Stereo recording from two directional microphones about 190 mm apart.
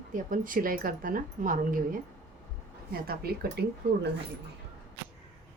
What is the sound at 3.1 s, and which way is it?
Speech, 55° right (ahead or behind).